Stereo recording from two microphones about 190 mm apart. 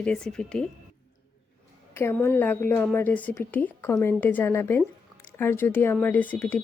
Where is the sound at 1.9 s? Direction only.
10° left (ahead or behind).